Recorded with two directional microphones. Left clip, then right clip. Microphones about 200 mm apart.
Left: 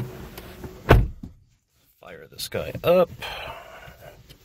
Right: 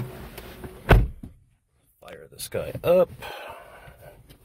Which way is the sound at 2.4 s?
5° right (ahead or behind).